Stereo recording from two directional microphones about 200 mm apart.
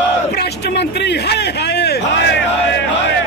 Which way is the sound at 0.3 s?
55° left (ahead or behind).